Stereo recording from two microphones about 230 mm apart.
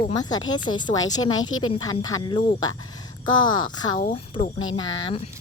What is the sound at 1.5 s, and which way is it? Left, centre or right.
Speech, left.